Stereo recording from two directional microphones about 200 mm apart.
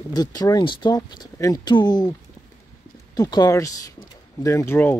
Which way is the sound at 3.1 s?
20° left (ahead or behind).